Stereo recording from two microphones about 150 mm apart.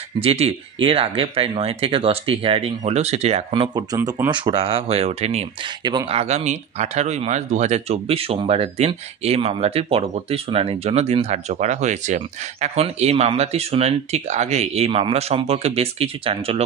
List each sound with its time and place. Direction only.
0.2 s speech: 40° right (ahead or behind)
5.9 s speech: 25° right (ahead or behind)
6.1 s speech: 45° right (ahead or behind)